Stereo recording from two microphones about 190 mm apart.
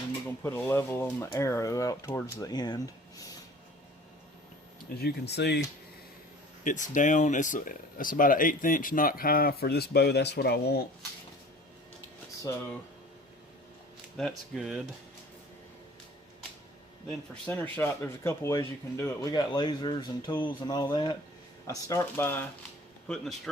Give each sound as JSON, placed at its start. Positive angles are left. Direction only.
{"t": 0.4, "sound": "speech", "side_deg": 15}
{"t": 4.9, "sound": "speech", "side_deg": 60}
{"t": 6.7, "sound": "speech", "side_deg": 40}
{"t": 12.5, "sound": "speech", "side_deg": 15}
{"t": 14.2, "sound": "speech", "side_deg": 5}
{"t": 17.1, "sound": "speech", "side_deg": 5}